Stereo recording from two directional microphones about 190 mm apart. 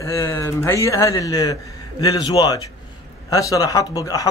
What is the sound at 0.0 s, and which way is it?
A man's voice, 15° left (ahead or behind).